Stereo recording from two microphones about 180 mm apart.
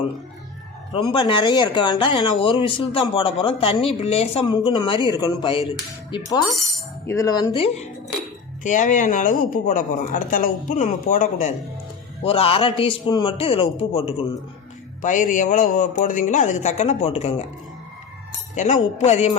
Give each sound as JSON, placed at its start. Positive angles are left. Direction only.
{"t": 1.1, "sound": "speech", "side_deg": 25}
{"t": 8.6, "sound": "a man's voice", "side_deg": 45}
{"t": 12.2, "sound": "a man's voice", "side_deg": 30}
{"t": 15.0, "sound": "a man's voice", "side_deg": 45}
{"t": 18.5, "sound": "a man's voice", "side_deg": 40}